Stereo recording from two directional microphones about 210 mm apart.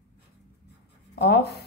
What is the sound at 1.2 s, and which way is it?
Speech, 50° left (ahead or behind).